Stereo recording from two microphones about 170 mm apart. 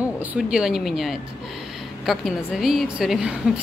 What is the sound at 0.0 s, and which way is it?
Speech, 10° right (ahead or behind).